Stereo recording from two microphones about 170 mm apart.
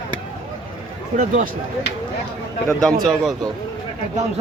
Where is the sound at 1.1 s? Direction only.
55° right (ahead or behind).